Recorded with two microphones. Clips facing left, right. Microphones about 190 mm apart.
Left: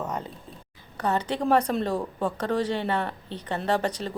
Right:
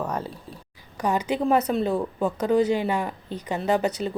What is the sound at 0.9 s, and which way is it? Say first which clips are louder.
Speech: right 2 dB; 10° right (ahead or behind).